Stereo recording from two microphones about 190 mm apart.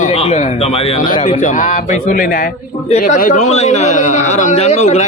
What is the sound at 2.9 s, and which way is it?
A man's voice, 35° left (ahead or behind).